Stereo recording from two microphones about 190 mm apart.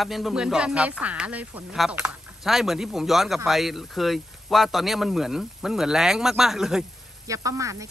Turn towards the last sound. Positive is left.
turn(degrees=-15)  # may be behind; listen again after turning